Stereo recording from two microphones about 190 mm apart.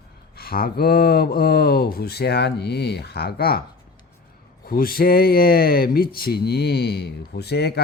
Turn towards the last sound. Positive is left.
turn(degrees=60)  # may be behind; listen again after turning